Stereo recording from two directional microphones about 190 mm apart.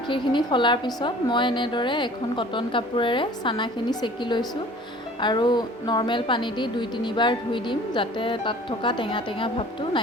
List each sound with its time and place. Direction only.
0.1 s a woman's voice: 25° left (ahead or behind)